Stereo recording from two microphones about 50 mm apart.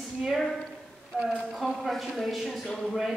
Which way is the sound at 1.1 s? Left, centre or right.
Centre.